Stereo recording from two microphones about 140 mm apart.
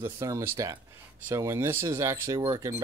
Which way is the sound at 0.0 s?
20° right (ahead or behind).